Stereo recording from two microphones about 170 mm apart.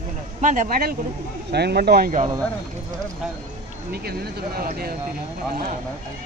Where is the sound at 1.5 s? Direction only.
70° right (ahead or behind).